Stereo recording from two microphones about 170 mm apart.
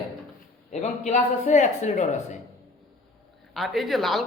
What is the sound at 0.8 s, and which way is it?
Speech, 45° left (ahead or behind).